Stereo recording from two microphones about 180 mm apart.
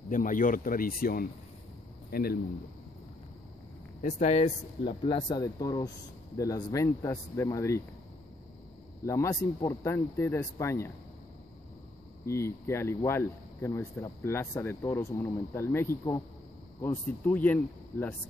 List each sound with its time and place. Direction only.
0.1 s a man's voice: 50° left (ahead or behind)
4.0 s speech: 40° left (ahead or behind)
5.0 s speech: 25° left (ahead or behind)
9.0 s speech: 15° left (ahead or behind)
12.3 s speech: 15° left (ahead or behind)